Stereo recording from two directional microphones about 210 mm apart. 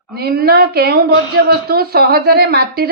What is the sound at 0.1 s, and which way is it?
A woman's voice, 45° right (ahead or behind).